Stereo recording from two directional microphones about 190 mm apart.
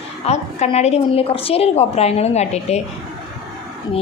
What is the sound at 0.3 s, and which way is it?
Speech, 35° left (ahead or behind).